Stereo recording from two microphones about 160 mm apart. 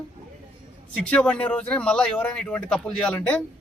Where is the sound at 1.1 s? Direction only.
5° left (ahead or behind).